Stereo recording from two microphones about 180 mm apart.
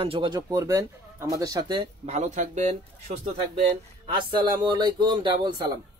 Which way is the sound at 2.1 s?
40° right (ahead or behind).